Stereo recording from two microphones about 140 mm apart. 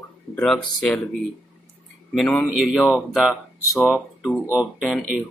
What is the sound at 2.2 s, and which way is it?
Speech, 5° left (ahead or behind).